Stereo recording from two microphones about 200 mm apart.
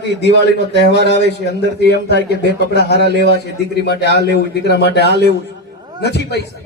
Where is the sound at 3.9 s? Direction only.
60° left (ahead or behind).